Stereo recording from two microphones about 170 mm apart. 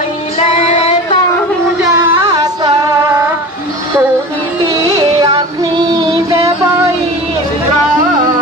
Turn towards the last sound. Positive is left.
turn(degrees=-20)  # may be behind; listen again after turning